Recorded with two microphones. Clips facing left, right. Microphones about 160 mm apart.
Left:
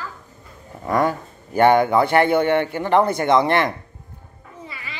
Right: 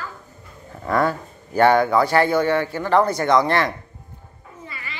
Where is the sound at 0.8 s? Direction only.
15° left (ahead or behind).